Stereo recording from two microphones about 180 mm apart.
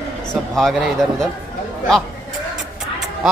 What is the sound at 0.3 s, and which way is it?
Speech, 5° right (ahead or behind).